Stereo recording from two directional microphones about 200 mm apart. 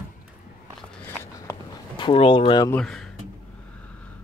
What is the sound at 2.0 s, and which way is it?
Speech, 25° left (ahead or behind).